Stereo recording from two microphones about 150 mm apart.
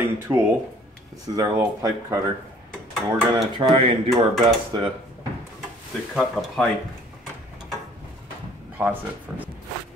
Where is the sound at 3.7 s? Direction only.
40° right (ahead or behind).